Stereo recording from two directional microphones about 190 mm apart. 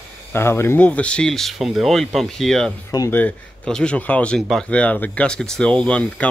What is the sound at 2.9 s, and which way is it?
Speech, 15° left (ahead or behind).